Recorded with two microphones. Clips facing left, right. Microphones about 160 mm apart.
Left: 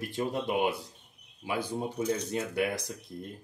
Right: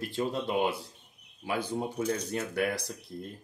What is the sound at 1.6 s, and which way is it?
Speech, 10° left (ahead or behind).